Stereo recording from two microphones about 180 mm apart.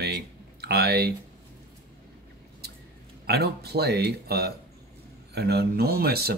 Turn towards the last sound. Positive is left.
turn(degrees=-60)  # may be behind; listen again after turning